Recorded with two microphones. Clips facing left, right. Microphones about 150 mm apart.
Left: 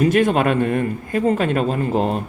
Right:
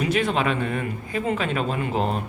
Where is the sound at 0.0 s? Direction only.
45° left (ahead or behind).